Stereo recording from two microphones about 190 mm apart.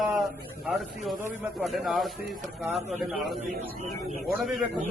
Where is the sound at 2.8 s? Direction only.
35° right (ahead or behind).